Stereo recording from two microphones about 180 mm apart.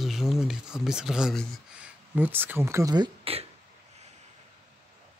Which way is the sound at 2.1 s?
10° right (ahead or behind).